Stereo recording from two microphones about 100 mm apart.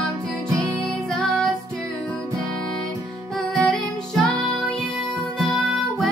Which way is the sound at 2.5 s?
5° left (ahead or behind).